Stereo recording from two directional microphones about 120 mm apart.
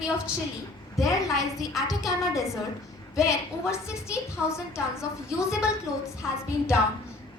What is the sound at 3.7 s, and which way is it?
A woman's voice, 20° left (ahead or behind).